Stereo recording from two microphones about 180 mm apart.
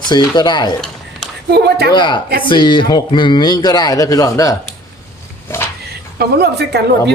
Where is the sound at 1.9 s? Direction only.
25° left (ahead or behind).